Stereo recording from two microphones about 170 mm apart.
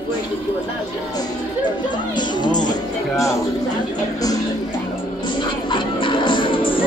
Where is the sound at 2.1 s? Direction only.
25° left (ahead or behind).